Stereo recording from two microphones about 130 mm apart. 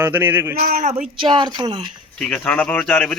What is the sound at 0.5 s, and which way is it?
Speech, 80° right.